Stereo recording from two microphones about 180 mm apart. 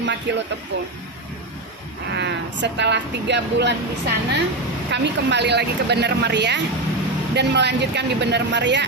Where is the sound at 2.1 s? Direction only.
70° right (ahead or behind).